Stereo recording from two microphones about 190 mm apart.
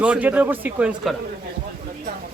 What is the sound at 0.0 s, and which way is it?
Speech, 10° right (ahead or behind).